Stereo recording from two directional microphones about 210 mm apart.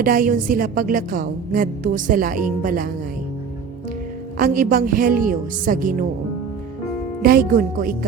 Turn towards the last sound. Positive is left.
turn(degrees=-45)  # may be behind; listen again after turning